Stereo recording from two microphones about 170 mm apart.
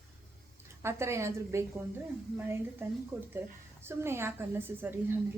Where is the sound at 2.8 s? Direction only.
15° right (ahead or behind).